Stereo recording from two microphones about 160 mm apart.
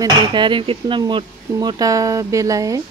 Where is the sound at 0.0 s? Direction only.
30° right (ahead or behind).